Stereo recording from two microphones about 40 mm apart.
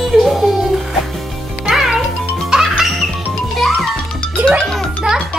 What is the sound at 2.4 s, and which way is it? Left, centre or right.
Music, centre.